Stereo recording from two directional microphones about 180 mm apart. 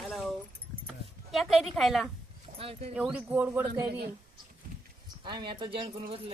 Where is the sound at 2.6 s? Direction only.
30° right (ahead or behind).